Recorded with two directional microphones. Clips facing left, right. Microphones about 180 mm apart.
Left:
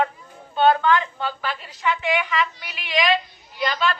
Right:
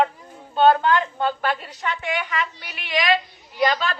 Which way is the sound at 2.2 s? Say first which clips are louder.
Left 3 dB; 40° right (ahead or behind).